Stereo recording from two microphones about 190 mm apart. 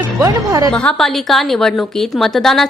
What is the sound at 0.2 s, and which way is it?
Speech, 20° right (ahead or behind).